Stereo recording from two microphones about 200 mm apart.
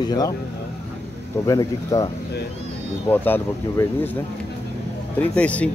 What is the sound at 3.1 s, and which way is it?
Speech, 10° left (ahead or behind).